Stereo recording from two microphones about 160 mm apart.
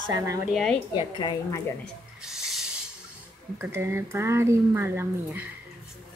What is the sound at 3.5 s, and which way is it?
Speech, 15° right (ahead or behind).